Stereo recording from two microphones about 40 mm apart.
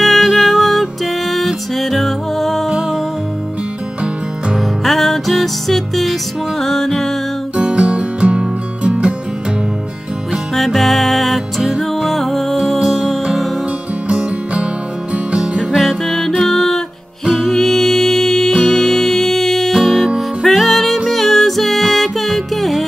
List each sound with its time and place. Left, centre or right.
0.0 s music: centre
4.8 s music: centre
7.5 s music: right
10.5 s music: centre
12.7 s music: centre
14.0 s music: right
15.7 s music: centre
19.7 s music: centre